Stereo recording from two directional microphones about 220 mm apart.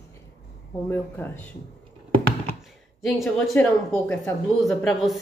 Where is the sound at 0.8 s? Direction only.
10° left (ahead or behind).